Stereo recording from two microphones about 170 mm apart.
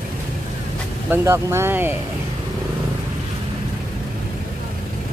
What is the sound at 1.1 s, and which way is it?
Speech, 15° right (ahead or behind).